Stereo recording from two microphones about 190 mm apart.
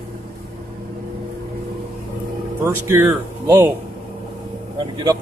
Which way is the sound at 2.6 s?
15° right (ahead or behind).